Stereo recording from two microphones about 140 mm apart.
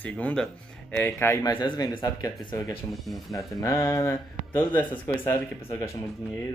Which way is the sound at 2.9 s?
Centre (ahead or behind).